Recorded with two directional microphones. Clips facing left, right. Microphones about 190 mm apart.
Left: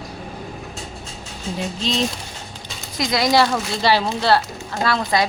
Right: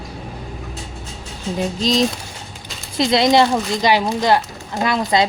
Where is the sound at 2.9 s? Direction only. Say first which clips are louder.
Right 4 dB; 25° right (ahead or behind).